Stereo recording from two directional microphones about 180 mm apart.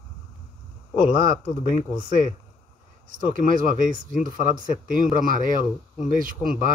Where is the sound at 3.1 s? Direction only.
50° right (ahead or behind).